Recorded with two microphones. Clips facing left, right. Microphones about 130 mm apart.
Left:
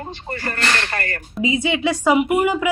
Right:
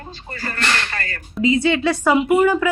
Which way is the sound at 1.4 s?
15° left (ahead or behind).